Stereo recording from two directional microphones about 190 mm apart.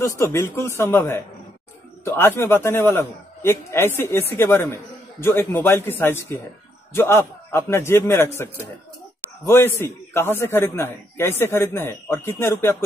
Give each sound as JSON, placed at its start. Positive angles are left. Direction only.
{"t": 0.0, "sound": "a man's voice", "side_deg": 15}